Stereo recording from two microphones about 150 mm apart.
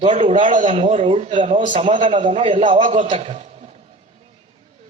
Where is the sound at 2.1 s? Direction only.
35° right (ahead or behind).